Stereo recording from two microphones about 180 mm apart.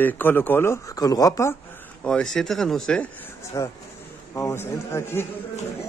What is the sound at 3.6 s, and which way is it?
Speech, 20° left (ahead or behind).